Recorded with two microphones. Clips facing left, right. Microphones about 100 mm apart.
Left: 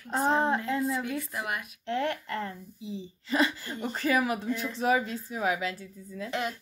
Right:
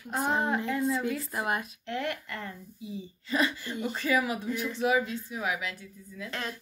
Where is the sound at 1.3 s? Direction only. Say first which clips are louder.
Right 3 dB; 30° right (ahead or behind).